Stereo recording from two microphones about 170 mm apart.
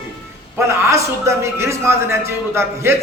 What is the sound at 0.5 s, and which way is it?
A man's voice, 15° right (ahead or behind).